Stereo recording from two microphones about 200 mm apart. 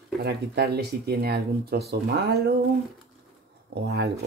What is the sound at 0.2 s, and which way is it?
Speech, 55° right (ahead or behind).